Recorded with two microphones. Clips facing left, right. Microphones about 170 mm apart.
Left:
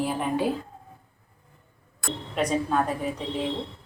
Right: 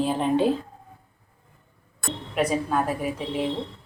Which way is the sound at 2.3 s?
10° right (ahead or behind).